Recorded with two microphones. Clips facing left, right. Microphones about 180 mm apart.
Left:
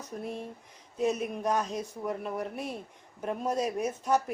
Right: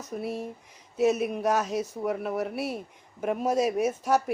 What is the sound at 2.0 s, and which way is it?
Speech, 10° right (ahead or behind).